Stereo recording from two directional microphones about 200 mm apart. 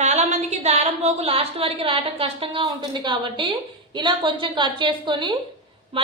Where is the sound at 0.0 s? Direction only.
35° right (ahead or behind).